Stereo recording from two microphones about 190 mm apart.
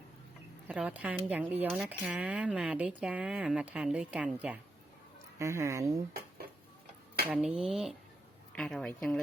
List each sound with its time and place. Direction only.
0.7 s speech: 10° right (ahead or behind)
7.4 s a woman's voice: 5° right (ahead or behind)